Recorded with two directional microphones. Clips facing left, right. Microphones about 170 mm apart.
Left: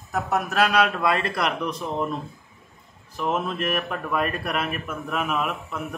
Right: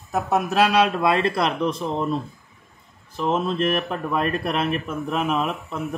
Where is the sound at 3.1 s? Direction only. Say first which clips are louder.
Right 3 dB; 30° right (ahead or behind).